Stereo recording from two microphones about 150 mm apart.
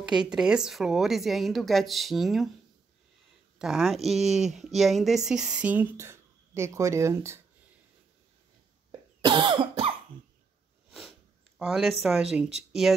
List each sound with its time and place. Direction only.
0.1 s a woman's voice: 5° right (ahead or behind)
3.5 s a woman's voice: 5° right (ahead or behind); by 7.3 s 20° right (ahead or behind)
9.2 s cough: 30° right (ahead or behind)
10.9 s sniff: centre (ahead or behind)
12.0 s a woman's voice: centre (ahead or behind)